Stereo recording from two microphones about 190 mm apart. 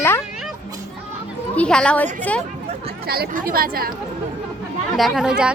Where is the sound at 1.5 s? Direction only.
5° left (ahead or behind).